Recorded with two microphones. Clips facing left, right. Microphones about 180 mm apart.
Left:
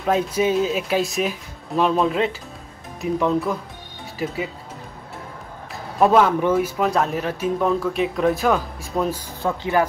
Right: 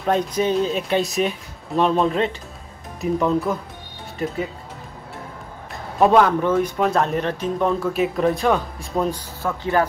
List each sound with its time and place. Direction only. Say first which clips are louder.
0.0 s speech: even; centre (ahead or behind)
5.9 s speech: right 1 dB; centre (ahead or behind)
9.4 s speech: even; 15° left (ahead or behind)